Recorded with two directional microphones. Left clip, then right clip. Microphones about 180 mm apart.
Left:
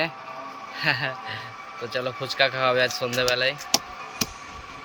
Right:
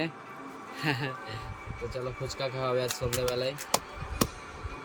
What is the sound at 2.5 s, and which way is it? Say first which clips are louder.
Speech: left 8 dB; 30° left (ahead or behind).